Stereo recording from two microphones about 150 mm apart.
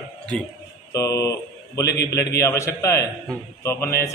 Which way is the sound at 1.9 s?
90° left.